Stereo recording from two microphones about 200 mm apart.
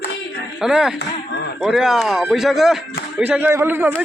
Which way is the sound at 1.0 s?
60° left (ahead or behind).